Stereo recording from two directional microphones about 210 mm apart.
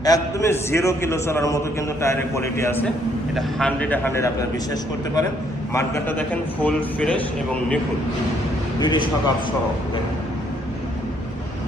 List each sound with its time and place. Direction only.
0.0 s a man's voice: 15° left (ahead or behind)
8.8 s a man's voice: 20° left (ahead or behind)